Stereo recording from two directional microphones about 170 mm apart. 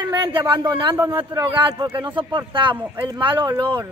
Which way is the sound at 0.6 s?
25° right (ahead or behind).